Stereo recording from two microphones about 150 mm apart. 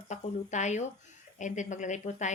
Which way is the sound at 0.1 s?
55° left (ahead or behind).